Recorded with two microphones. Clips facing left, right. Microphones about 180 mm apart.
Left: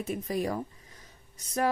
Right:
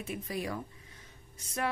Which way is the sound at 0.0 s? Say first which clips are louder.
Left 6 dB; 40° left (ahead or behind).